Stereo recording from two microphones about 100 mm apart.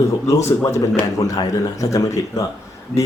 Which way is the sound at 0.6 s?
30° left (ahead or behind).